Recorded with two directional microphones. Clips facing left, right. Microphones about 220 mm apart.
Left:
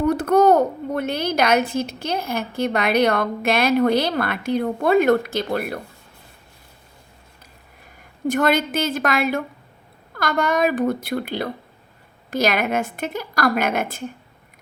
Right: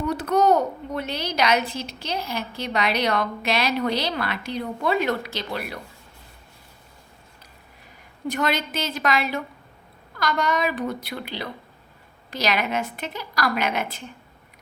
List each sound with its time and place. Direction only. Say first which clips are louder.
0.0 s a child's voice: left 5 dB; 50° left (ahead or behind)
8.3 s a child's voice: left 6 dB; 50° left (ahead or behind)